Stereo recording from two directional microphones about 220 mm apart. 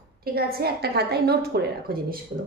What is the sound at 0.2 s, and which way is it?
A woman's voice, 45° right (ahead or behind).